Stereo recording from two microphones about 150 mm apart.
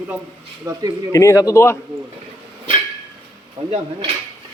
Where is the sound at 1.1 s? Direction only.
20° left (ahead or behind).